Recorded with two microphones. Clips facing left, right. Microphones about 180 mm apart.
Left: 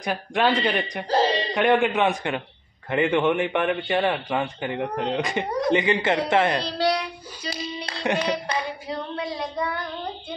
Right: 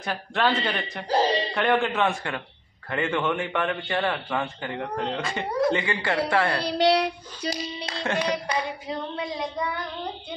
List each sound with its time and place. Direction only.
0.0 s a man's voice: 15° left (ahead or behind)
1.0 s speech: 10° right (ahead or behind)
1.5 s a man's voice: 15° left (ahead or behind)
6.8 s speech: 35° right (ahead or behind)
8.0 s a man's voice: 15° left (ahead or behind)
8.5 s child singing: 15° right (ahead or behind)